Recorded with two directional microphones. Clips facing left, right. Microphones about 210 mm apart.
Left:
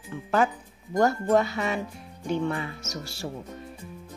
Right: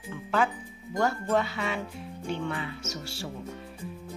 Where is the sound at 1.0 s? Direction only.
40° left (ahead or behind).